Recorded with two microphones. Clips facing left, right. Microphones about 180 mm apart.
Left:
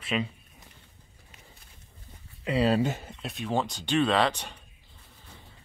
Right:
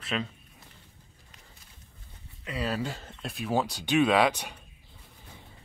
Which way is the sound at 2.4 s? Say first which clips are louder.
Left 7 dB; 30° left (ahead or behind).